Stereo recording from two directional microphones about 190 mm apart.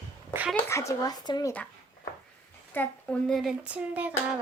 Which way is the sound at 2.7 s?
5° left (ahead or behind).